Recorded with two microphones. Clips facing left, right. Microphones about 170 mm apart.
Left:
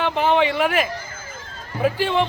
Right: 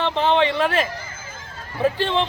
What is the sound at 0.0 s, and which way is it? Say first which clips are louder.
A man's voice: even; 10° left (ahead or behind).